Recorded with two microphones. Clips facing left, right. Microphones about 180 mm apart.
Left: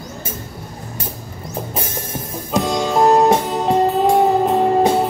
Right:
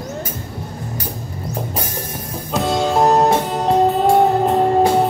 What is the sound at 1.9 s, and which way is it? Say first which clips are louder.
Music: even; 25° left (ahead or behind).